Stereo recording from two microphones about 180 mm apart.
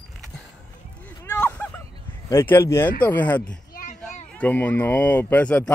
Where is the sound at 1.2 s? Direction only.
10° left (ahead or behind).